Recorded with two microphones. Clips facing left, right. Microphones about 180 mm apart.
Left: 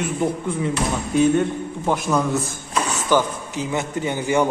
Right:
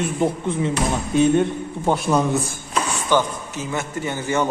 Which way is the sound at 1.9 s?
25° right (ahead or behind).